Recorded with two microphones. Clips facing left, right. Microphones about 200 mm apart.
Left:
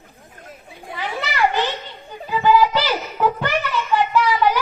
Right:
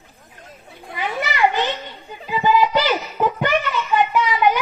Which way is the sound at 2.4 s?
20° right (ahead or behind).